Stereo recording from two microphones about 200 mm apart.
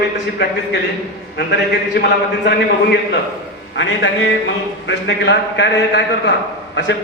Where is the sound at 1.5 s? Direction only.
55° left (ahead or behind).